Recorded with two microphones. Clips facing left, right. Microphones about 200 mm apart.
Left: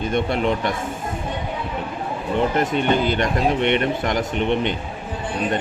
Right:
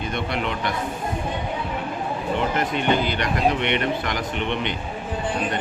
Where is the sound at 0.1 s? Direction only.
45° left (ahead or behind).